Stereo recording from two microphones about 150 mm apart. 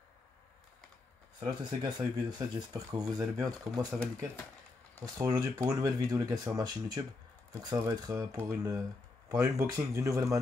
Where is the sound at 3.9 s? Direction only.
5° left (ahead or behind).